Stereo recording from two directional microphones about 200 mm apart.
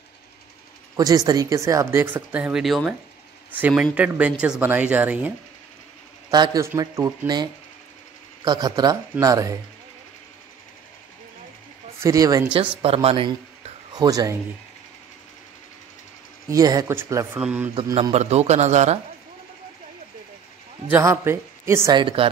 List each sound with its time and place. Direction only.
0.9 s speech: 20° right (ahead or behind)
6.3 s speech: 20° right (ahead or behind)
8.5 s speech: 20° right (ahead or behind)
12.0 s speech: 15° right (ahead or behind)
12.5 s speech: 30° right (ahead or behind)
13.9 s speech: 20° right (ahead or behind)
16.4 s speech: 15° right (ahead or behind)
17.7 s speech: 20° right (ahead or behind)
18.1 s speech: 35° right (ahead or behind)
20.9 s speech: 15° right (ahead or behind)